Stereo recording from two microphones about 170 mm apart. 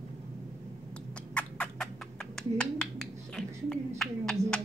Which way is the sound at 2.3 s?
5° left (ahead or behind).